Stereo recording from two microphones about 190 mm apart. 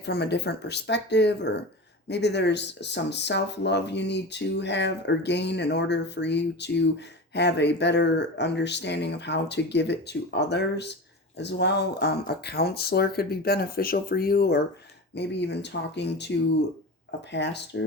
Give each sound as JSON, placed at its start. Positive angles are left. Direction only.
{"t": 0.0, "sound": "speech", "side_deg": 60}
{"t": 17.3, "sound": "speech", "side_deg": 65}